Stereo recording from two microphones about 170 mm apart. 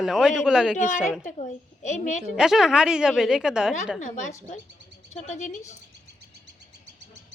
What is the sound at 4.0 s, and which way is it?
A woman's voice, 45° left (ahead or behind).